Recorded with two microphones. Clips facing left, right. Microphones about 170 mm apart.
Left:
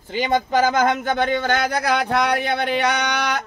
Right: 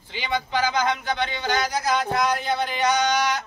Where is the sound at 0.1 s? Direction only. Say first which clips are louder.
Left 7 dB; 45° left (ahead or behind).